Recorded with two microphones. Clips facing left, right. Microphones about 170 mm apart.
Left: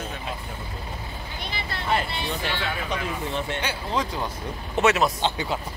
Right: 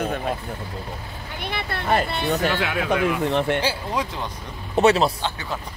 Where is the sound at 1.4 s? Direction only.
60° right (ahead or behind); by 2.6 s 45° right (ahead or behind).